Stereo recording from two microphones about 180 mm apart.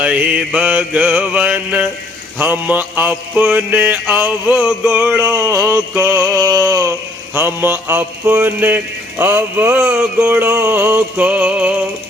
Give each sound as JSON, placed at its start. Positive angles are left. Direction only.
{"t": 0.0, "sound": "mantra", "side_deg": -10}
{"t": 6.3, "sound": "a sound", "side_deg": -20}
{"t": 7.3, "sound": "mantra", "side_deg": -10}